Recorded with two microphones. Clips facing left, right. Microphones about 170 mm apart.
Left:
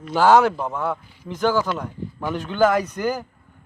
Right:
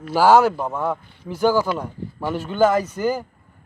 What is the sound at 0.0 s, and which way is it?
Speech, 10° right (ahead or behind).